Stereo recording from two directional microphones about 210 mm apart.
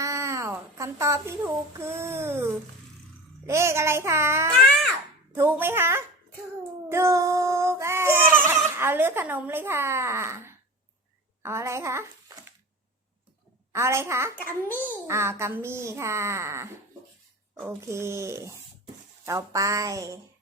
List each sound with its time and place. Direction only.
0.0 s cat: 15° right (ahead or behind)
1.8 s speech: 15° right (ahead or behind)
6.8 s a sound: 15° right (ahead or behind)
11.4 s speech: 15° right (ahead or behind)
13.7 s speech: 10° right (ahead or behind)
14.3 s a child's voice: 10° left (ahead or behind)
15.0 s speech: 10° right (ahead or behind)